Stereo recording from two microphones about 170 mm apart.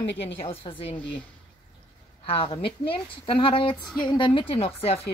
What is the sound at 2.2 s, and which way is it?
Speech, 35° left (ahead or behind).